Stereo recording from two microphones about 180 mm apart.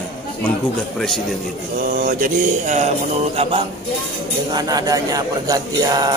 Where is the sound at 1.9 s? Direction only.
45° right (ahead or behind).